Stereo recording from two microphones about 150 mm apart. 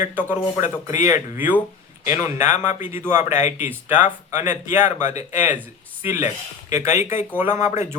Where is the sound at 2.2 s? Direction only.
15° right (ahead or behind).